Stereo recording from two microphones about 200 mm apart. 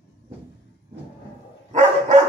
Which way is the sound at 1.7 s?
35° right (ahead or behind).